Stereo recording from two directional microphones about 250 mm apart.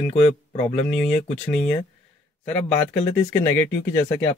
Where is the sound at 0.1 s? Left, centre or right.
Left.